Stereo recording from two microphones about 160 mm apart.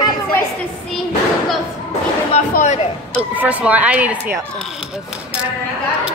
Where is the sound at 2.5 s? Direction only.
50° left (ahead or behind).